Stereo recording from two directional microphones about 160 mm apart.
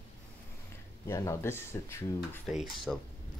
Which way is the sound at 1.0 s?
15° left (ahead or behind).